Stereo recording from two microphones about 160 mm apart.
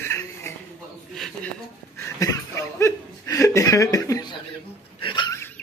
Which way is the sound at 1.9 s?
20° left (ahead or behind).